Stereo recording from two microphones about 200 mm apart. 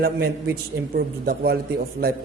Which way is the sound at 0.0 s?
50° right (ahead or behind).